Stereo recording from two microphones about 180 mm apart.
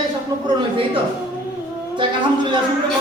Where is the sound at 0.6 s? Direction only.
30° right (ahead or behind).